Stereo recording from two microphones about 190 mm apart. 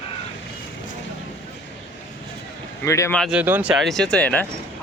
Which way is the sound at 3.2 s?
5° right (ahead or behind).